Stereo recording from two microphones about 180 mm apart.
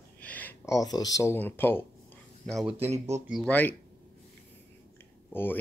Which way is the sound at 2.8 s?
35° right (ahead or behind).